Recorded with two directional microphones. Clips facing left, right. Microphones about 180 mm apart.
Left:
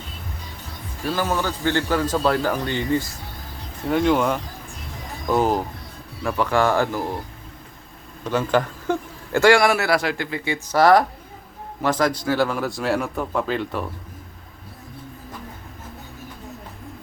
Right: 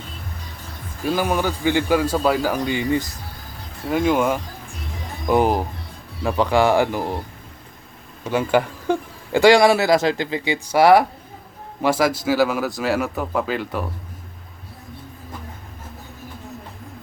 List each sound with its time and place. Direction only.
1.0 s speech: 15° right (ahead or behind)
8.2 s speech: 10° right (ahead or behind)